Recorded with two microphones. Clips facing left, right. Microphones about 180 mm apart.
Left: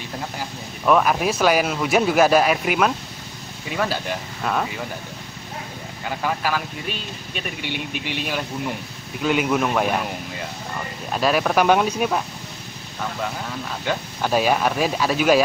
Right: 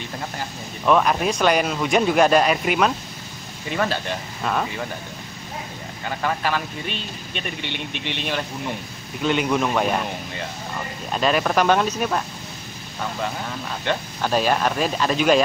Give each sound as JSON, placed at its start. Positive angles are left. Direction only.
{"t": 0.4, "sound": "speech", "side_deg": 5}
{"t": 6.0, "sound": "speech", "side_deg": 5}
{"t": 11.1, "sound": "speech", "side_deg": 5}
{"t": 13.8, "sound": "speech", "side_deg": 10}